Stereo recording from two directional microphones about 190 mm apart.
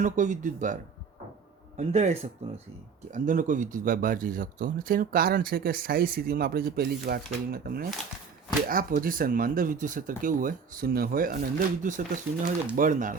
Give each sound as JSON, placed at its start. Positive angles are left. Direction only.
{"t": 0.0, "sound": "speech", "side_deg": -40}